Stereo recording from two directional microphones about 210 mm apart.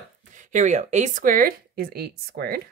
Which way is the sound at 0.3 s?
35° right (ahead or behind).